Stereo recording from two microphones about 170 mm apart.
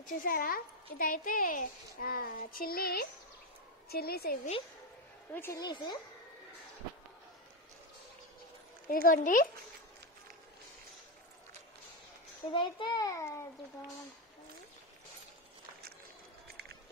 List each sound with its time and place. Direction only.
0.0 s speech: 55° left (ahead or behind)
5.3 s a woman's voice: 10° left (ahead or behind)
5.6 s a child's voice: 25° left (ahead or behind)
8.8 s speech: 55° left (ahead or behind)
12.5 s a child's voice: 30° left (ahead or behind)